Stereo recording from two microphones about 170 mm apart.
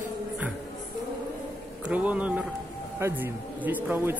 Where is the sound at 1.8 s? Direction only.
10° right (ahead or behind).